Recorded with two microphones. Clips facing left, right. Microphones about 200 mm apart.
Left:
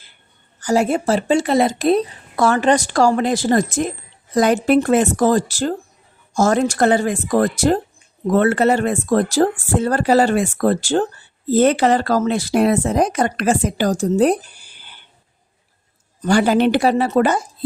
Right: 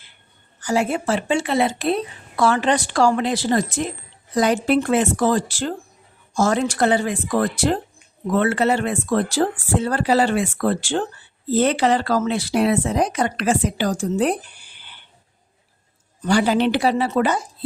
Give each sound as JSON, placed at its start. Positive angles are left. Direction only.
{"t": 0.6, "sound": "speech", "side_deg": 40}
{"t": 16.2, "sound": "speech", "side_deg": 50}